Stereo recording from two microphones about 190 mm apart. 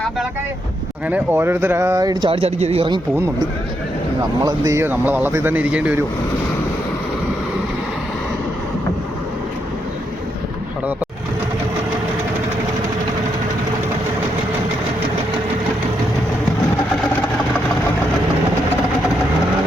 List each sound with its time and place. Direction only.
1.0 s speech: 10° right (ahead or behind); by 3.0 s 30° right (ahead or behind)
4.4 s speech: 15° right (ahead or behind)